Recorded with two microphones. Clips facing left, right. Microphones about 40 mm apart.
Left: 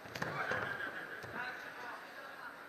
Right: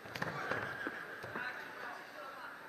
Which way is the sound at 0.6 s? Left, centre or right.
Centre.